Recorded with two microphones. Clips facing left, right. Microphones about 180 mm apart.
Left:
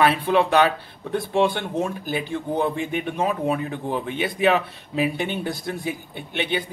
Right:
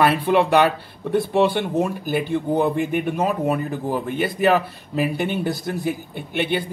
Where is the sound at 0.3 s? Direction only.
10° right (ahead or behind).